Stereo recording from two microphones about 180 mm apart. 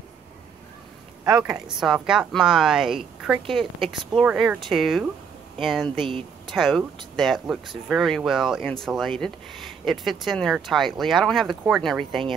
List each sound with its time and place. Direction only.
1.4 s speech: 5° right (ahead or behind)
5.9 s speech: 30° right (ahead or behind)
6.5 s speech: centre (ahead or behind)